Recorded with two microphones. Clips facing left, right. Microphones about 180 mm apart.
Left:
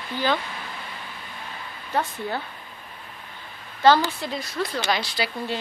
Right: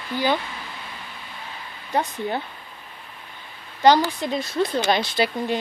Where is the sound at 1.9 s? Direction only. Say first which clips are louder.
Right 2 dB; 20° right (ahead or behind).